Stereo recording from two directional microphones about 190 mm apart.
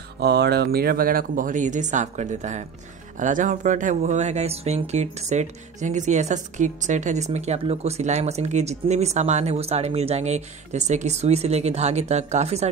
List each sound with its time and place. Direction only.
0.2 s speech: 60° right (ahead or behind); by 12.6 s 35° right (ahead or behind)